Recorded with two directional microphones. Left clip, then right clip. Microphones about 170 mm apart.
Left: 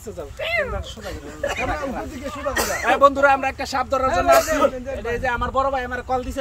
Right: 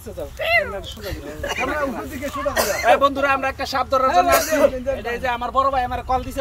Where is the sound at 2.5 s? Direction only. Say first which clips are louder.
Right 3 dB; 30° left (ahead or behind).